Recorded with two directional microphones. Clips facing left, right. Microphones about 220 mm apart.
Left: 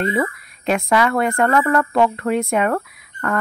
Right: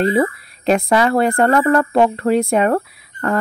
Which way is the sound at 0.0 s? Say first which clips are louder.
Right 5 dB; 35° right (ahead or behind).